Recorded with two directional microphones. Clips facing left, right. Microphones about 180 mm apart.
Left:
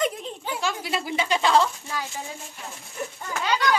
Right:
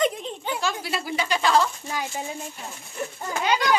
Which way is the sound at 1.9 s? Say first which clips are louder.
Right 2 dB; 20° right (ahead or behind).